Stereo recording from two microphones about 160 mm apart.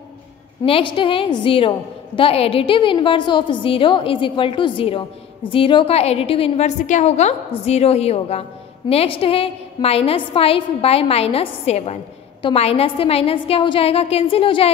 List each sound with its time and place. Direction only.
0.7 s a woman's voice: 35° left (ahead or behind)